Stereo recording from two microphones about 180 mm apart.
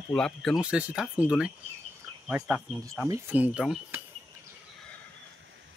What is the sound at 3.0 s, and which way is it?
Speech, 15° right (ahead or behind).